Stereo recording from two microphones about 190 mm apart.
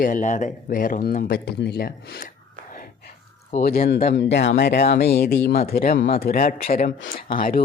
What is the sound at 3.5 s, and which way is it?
Speech, 50° left (ahead or behind).